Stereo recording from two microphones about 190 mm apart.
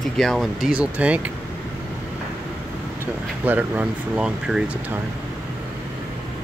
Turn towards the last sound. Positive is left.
turn(degrees=-5)  # may be behind; listen again after turning